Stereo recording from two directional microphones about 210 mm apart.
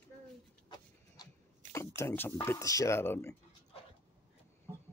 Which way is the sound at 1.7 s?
10° left (ahead or behind).